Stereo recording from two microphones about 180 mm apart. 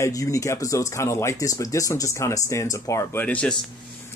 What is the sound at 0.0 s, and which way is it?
Speech, 20° left (ahead or behind).